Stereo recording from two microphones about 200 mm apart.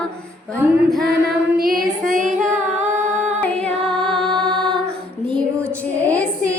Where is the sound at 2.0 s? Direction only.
40° right (ahead or behind).